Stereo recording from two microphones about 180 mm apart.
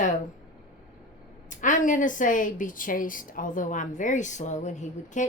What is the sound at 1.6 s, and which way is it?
A woman's voice, 45° left (ahead or behind).